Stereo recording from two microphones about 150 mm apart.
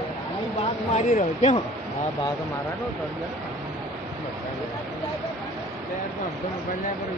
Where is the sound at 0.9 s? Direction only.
55° left (ahead or behind).